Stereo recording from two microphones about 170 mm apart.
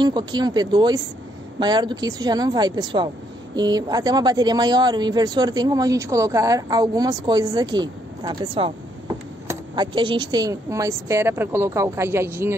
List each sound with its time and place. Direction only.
0.0 s a woman's voice: 25° right (ahead or behind)